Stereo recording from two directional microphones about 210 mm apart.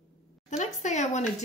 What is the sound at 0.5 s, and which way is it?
Speech, 35° left (ahead or behind).